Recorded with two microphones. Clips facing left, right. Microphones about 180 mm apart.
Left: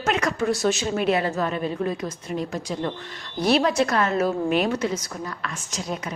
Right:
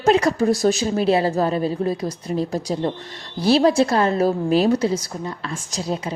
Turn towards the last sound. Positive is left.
turn(degrees=-30)  # may be behind; listen again after turning